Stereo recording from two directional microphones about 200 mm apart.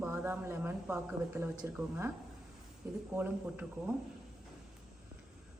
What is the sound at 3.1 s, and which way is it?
Speech, 10° right (ahead or behind).